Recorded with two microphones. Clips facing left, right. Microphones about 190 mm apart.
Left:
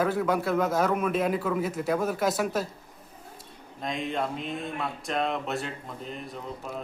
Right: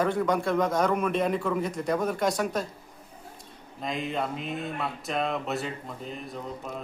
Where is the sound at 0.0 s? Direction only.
5° left (ahead or behind).